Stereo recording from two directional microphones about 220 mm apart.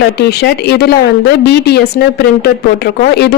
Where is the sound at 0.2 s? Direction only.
50° left (ahead or behind).